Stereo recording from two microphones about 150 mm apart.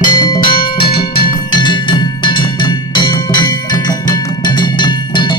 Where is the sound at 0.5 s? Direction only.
90° left.